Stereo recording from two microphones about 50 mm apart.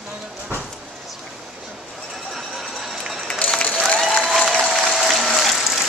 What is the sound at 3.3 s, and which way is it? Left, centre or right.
Run, left.